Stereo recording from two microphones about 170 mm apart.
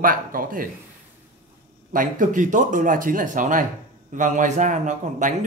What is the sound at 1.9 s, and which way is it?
Speech, 50° right (ahead or behind).